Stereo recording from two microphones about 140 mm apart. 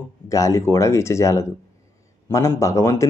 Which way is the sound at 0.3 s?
25° left (ahead or behind).